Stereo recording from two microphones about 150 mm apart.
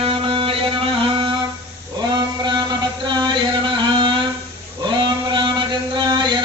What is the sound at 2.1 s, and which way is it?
Chant, 30° right (ahead or behind).